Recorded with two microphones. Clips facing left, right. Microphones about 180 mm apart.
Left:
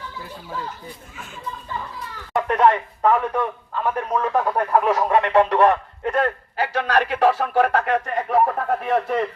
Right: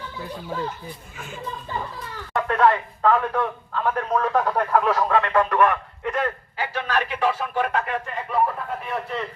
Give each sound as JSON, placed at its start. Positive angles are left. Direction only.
{"t": 2.3, "sound": "speech", "side_deg": 20}
{"t": 5.3, "sound": "a man's voice", "side_deg": 30}